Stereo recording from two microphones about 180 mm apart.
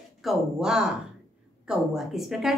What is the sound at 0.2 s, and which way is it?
A woman's voice, centre (ahead or behind).